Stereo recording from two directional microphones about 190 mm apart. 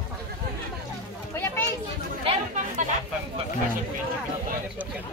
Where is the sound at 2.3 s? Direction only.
40° right (ahead or behind).